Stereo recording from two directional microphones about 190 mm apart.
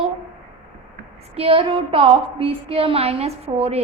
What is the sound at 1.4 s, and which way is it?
A woman's voice, 30° right (ahead or behind).